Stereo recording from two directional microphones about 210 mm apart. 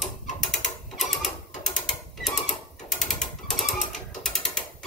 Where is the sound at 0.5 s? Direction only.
Centre (ahead or behind).